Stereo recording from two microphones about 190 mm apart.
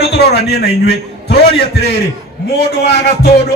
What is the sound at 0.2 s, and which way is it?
A man's voice, 55° left (ahead or behind).